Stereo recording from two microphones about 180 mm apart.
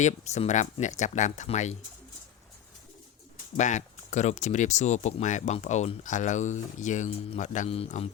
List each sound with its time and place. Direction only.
0.0 s speech: 40° left (ahead or behind)
3.6 s speech: 40° left (ahead or behind)